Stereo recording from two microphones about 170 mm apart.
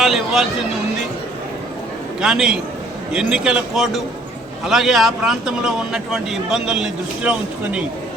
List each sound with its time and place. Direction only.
0.0 s speech: centre (ahead or behind)
2.2 s speech: 5° right (ahead or behind)